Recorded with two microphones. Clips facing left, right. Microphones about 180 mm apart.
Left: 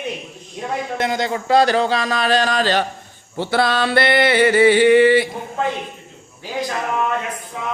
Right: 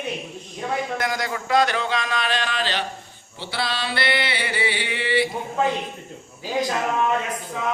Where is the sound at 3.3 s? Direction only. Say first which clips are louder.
Left 10 dB; 50° left (ahead or behind).